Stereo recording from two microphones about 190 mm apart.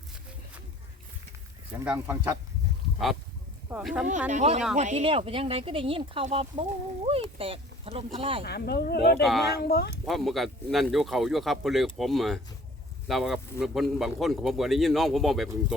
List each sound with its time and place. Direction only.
1.8 s speech: 10° right (ahead or behind)
3.7 s a man's voice: 5° right (ahead or behind)
4.3 s speech: 35° right (ahead or behind)
8.4 s speech: 60° left (ahead or behind)
10.1 s a man's voice: centre (ahead or behind)